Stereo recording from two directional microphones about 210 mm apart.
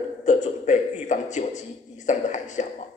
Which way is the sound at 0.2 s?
35° left (ahead or behind).